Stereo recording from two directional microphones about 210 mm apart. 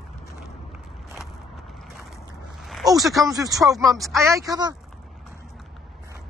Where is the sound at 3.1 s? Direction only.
15° right (ahead or behind).